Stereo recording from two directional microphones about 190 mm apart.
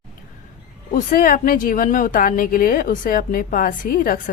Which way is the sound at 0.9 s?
45° left (ahead or behind).